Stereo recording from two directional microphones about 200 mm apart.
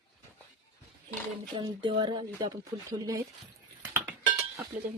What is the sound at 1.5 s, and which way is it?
Speech, 25° right (ahead or behind).